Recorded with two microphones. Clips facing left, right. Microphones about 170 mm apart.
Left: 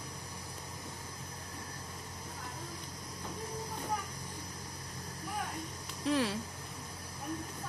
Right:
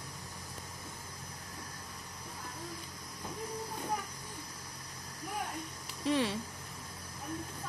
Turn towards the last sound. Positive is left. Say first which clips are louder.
# even
turn(degrees=0)  # may be behind; listen again after turning